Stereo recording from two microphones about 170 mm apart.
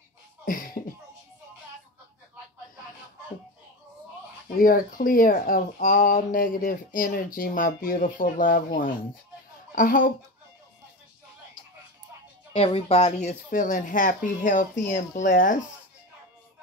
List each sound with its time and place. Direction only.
4.6 s speech: 55° left (ahead or behind)
12.5 s speech: 35° left (ahead or behind); by 15.6 s 55° left (ahead or behind)